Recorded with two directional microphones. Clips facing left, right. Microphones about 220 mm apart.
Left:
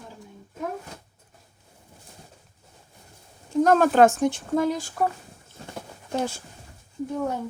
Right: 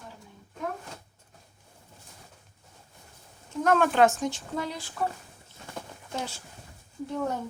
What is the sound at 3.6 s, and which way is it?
Speech, 40° left (ahead or behind).